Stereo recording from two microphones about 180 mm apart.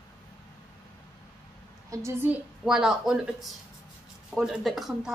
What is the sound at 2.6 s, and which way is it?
Speech, 5° right (ahead or behind).